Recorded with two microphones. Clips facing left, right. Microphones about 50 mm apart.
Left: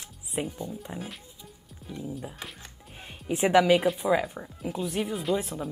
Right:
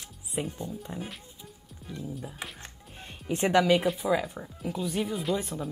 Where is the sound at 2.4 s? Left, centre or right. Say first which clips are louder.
Right 1 dB; centre.